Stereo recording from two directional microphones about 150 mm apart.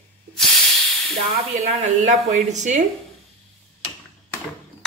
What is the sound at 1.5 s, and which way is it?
A woman's voice, 50° right (ahead or behind).